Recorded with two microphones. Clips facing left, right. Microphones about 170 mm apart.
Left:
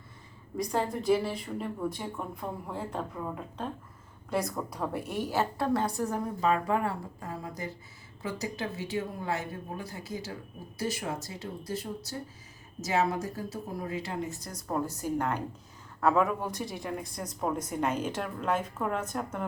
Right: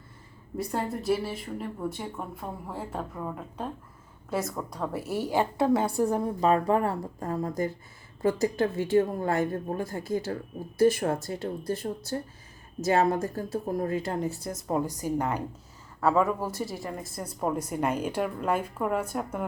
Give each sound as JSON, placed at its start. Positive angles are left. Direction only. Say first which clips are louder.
{"t": 0.5, "sound": "speech", "louder": "even", "side_deg": -5}
{"t": 5.9, "sound": "a woman's voice", "louder": "right 6 dB", "side_deg": -30}
{"t": 14.7, "sound": "a woman's voice", "louder": "right 3 dB", "side_deg": -15}
{"t": 16.0, "sound": "speech", "louder": "right 2 dB", "side_deg": 0}